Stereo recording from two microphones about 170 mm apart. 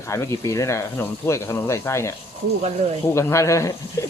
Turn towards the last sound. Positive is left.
turn(degrees=15)  # may be behind; listen again after turning